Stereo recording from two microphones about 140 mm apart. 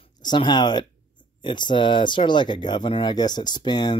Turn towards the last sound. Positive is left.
turn(degrees=30)  # may be behind; listen again after turning